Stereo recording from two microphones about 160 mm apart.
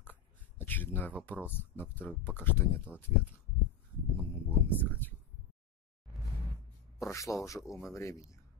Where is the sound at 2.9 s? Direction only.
5° right (ahead or behind).